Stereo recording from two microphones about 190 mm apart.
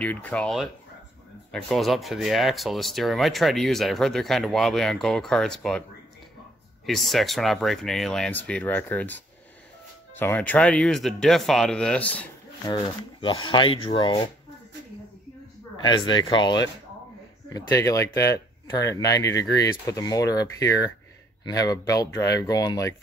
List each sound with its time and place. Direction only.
0.0 s speech: 10° left (ahead or behind)
6.9 s speech: centre (ahead or behind)
12.6 s speech: 25° left (ahead or behind)
15.8 s speech: 25° left (ahead or behind)